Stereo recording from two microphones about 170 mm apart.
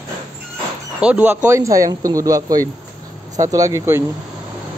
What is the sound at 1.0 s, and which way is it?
Speech, 5° right (ahead or behind).